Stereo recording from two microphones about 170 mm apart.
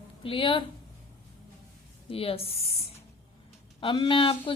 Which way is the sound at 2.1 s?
35° left (ahead or behind).